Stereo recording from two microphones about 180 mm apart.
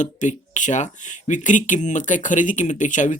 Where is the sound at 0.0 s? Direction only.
45° left (ahead or behind).